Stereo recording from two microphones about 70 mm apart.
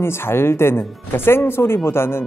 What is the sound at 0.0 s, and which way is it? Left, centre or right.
Speech, left.